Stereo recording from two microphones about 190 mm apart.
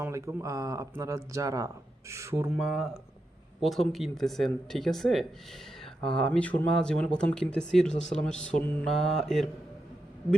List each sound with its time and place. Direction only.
0.0 s speech: 15° right (ahead or behind); by 9.5 s centre (ahead or behind)